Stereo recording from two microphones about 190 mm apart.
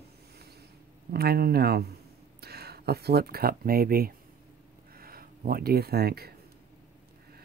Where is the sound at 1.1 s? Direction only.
55° right (ahead or behind).